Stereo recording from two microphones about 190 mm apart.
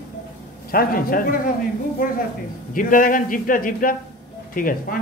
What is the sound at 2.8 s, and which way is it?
A man's voice, 45° left (ahead or behind).